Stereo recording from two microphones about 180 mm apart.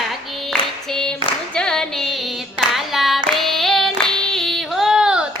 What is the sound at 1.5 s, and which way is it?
Singing, 5° left (ahead or behind).